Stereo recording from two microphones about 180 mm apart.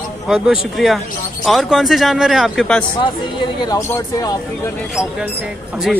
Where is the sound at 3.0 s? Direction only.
25° left (ahead or behind).